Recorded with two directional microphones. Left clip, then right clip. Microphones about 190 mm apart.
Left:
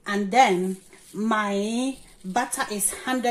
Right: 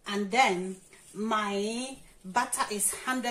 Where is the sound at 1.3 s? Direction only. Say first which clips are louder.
Left 5 dB; 55° left (ahead or behind).